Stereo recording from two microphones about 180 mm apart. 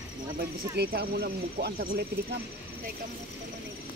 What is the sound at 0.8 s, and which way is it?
Speech, 60° right (ahead or behind).